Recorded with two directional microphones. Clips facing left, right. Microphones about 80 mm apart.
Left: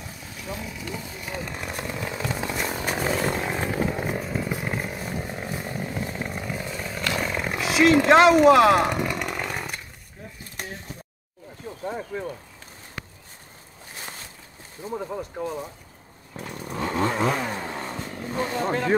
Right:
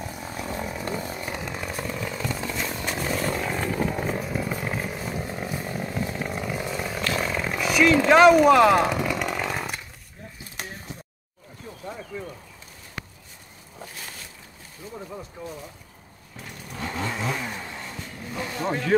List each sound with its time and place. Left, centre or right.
0.3 s chainsaw: right
1.6 s chainsaw: centre
4.2 s chainsaw: centre
12.1 s a sound: left
14.8 s boat: left
16.3 s chainsaw: left